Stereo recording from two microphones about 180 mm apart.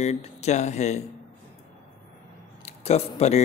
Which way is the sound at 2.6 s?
35° left (ahead or behind).